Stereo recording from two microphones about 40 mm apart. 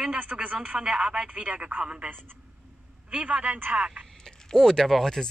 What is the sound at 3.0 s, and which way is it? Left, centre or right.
Speech, right.